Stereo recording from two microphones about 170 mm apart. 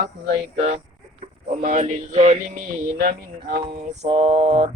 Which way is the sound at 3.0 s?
60° right (ahead or behind).